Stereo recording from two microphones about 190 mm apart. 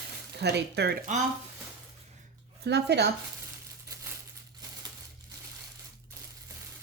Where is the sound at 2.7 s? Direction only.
60° right (ahead or behind).